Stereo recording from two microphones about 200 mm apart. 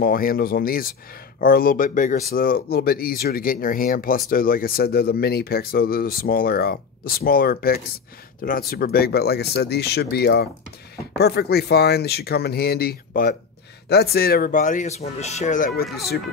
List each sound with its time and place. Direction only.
0.0 s speech: 45° left (ahead or behind)